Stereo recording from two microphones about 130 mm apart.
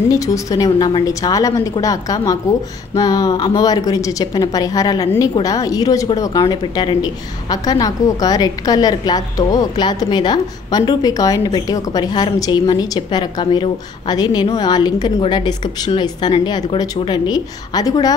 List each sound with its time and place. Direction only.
0.1 s a woman's voice: 25° left (ahead or behind)